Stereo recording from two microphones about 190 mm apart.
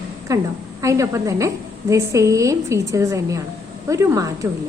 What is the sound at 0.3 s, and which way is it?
A woman's voice, 15° right (ahead or behind).